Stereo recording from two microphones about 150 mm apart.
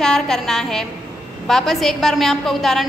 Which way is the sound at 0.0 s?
5° left (ahead or behind).